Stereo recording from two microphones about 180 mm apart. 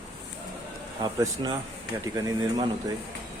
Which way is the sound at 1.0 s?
20° right (ahead or behind).